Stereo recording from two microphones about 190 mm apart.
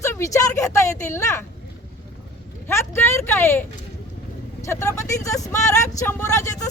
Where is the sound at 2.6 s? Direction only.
15° left (ahead or behind).